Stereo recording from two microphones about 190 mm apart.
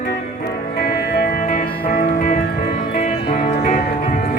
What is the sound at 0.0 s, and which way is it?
Music, 50° left (ahead or behind).